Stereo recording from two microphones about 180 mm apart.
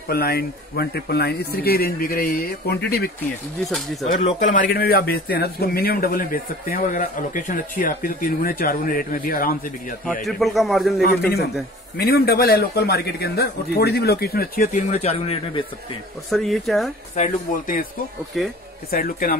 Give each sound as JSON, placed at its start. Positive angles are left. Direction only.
{"t": 0.1, "sound": "speech", "side_deg": 60}
{"t": 4.0, "sound": "a man's voice", "side_deg": 40}
{"t": 10.2, "sound": "a man's voice", "side_deg": 0}
{"t": 11.0, "sound": "speech", "side_deg": 60}
{"t": 16.3, "sound": "a man's voice", "side_deg": 0}
{"t": 17.1, "sound": "a man's voice", "side_deg": 45}
{"t": 18.3, "sound": "a man's voice", "side_deg": 0}
{"t": 18.9, "sound": "a man's voice", "side_deg": 55}